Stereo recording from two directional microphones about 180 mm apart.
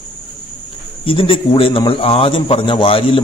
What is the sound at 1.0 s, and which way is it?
A man's voice, 30° left (ahead or behind).